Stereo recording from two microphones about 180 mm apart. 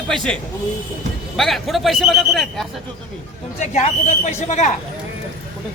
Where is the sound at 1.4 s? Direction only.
Centre (ahead or behind).